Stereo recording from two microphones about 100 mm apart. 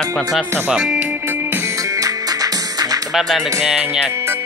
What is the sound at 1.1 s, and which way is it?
Music, 20° right (ahead or behind).